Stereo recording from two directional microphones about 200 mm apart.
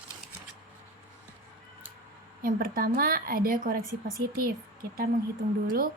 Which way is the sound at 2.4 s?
45° right (ahead or behind).